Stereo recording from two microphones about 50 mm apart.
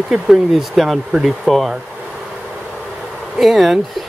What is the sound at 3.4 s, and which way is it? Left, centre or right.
Speech, centre.